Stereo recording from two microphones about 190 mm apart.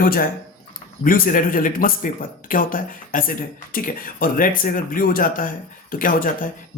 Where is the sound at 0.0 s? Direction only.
50° left (ahead or behind).